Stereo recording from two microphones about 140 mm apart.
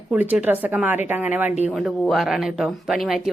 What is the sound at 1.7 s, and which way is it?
Speech, centre (ahead or behind).